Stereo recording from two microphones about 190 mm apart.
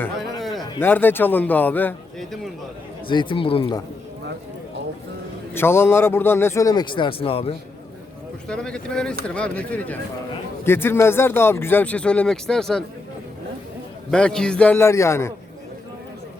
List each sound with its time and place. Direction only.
0.0 s a sound: centre (ahead or behind)
0.8 s speech: 10° left (ahead or behind)
3.1 s speech: 25° left (ahead or behind)
5.5 s speech: 10° left (ahead or behind); by 7.5 s 30° left (ahead or behind)
8.4 s speech: 5° left (ahead or behind)
14.1 s speech: 5° left (ahead or behind)